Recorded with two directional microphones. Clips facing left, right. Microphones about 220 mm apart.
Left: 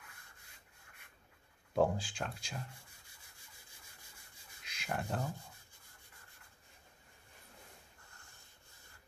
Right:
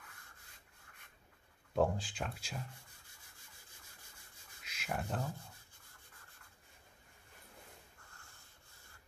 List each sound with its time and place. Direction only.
1.8 s speech: centre (ahead or behind)
4.6 s speech: centre (ahead or behind)